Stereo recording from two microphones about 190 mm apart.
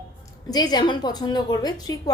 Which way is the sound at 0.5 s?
20° left (ahead or behind).